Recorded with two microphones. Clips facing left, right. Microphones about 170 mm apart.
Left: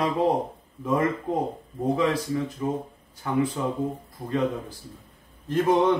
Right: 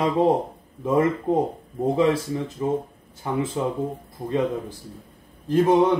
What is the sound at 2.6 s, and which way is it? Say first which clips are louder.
Speech: right 4 dB; 25° right (ahead or behind).